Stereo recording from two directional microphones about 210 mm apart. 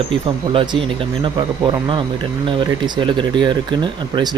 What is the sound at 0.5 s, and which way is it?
Speech, 25° right (ahead or behind).